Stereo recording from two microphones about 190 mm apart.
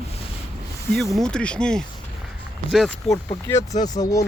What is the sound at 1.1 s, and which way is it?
Speech, 5° left (ahead or behind).